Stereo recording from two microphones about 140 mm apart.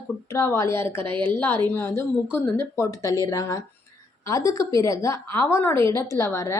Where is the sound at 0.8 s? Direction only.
40° right (ahead or behind).